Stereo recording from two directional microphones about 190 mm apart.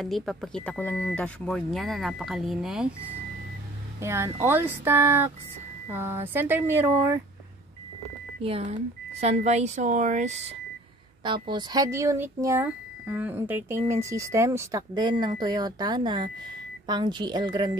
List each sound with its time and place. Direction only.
0.0 s speech: centre (ahead or behind)
4.0 s speech: 15° right (ahead or behind)
8.4 s speech: 30° right (ahead or behind)
11.2 s speech: 25° right (ahead or behind)